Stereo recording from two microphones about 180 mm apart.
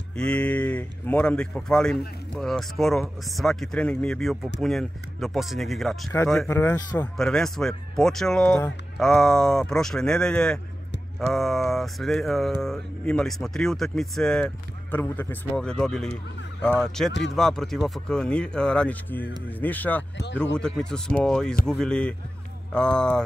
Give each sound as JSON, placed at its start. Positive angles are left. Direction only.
{"t": 0.1, "sound": "speech", "side_deg": 5}
{"t": 6.5, "sound": "speech", "side_deg": 15}
{"t": 7.2, "sound": "speech", "side_deg": 5}